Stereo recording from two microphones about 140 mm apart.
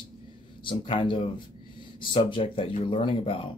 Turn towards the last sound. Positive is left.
turn(degrees=40)  # may be behind; listen again after turning